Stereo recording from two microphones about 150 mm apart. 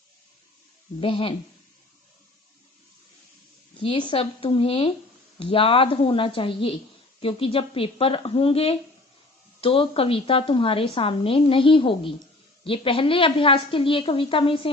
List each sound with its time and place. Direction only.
1.0 s a woman's voice: 35° left (ahead or behind)
3.8 s a woman's voice: 35° left (ahead or behind)